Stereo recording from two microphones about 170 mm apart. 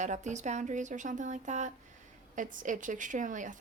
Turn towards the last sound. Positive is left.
turn(degrees=-50)  # may be behind; listen again after turning